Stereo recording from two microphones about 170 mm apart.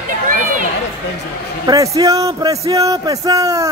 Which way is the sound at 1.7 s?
20° right (ahead or behind).